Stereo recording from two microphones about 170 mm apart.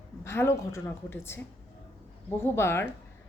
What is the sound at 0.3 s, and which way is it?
A woman's voice, 15° left (ahead or behind).